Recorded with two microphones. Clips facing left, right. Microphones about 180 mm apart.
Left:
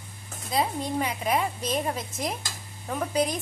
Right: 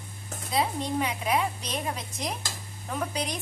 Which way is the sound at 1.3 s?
45° left (ahead or behind).